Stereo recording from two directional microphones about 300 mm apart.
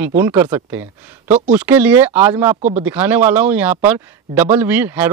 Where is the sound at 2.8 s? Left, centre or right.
Centre.